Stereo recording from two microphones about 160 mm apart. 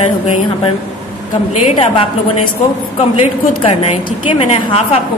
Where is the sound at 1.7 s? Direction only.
40° left (ahead or behind).